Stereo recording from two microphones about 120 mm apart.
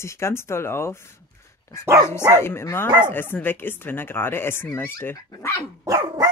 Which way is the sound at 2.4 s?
20° left (ahead or behind).